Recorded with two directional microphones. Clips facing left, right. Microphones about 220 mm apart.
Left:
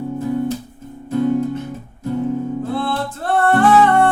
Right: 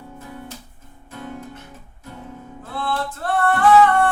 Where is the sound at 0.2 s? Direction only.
35° left (ahead or behind).